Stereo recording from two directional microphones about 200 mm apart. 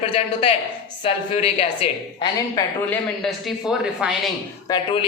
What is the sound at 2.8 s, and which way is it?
Speech, centre (ahead or behind).